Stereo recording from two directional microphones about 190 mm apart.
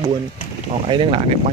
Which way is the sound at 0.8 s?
30° right (ahead or behind).